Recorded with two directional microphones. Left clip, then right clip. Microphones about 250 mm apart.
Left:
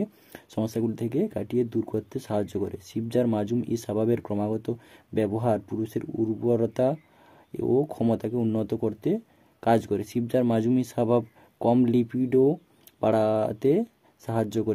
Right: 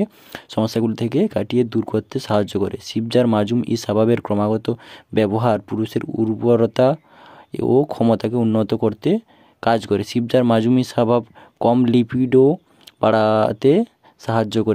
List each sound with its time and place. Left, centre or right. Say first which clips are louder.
0.0 s speech: right 9 dB; centre